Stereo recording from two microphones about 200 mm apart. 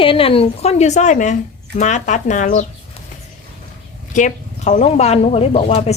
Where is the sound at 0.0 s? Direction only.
25° left (ahead or behind).